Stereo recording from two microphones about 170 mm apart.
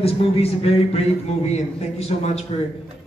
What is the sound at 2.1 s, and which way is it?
Speech, 40° left (ahead or behind).